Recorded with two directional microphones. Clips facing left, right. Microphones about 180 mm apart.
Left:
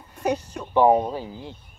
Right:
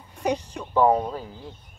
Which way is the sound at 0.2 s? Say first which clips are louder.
Left 1 dB; 10° left (ahead or behind).